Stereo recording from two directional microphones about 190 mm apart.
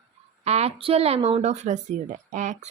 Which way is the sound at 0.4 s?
35° right (ahead or behind).